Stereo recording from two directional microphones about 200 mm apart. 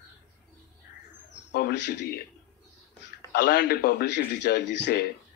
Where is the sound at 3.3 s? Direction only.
55° left (ahead or behind).